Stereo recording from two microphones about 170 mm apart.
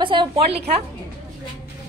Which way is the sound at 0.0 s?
25° right (ahead or behind).